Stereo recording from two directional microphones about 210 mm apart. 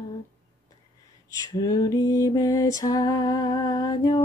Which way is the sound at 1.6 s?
15° left (ahead or behind).